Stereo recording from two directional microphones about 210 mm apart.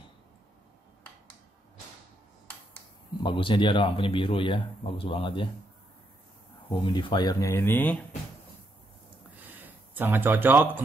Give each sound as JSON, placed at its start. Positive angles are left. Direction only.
{"t": 3.2, "sound": "speech", "side_deg": 25}
{"t": 6.7, "sound": "speech", "side_deg": 20}
{"t": 9.5, "sound": "speech", "side_deg": -10}